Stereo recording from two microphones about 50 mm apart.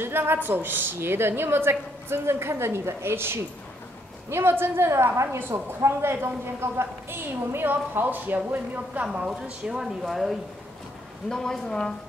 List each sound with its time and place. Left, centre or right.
0.0 s a woman's voice: right
9.3 s a woman's voice: centre
10.0 s speech: centre
11.2 s a woman's voice: centre